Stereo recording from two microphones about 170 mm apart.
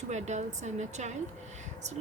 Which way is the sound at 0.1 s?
45° right (ahead or behind).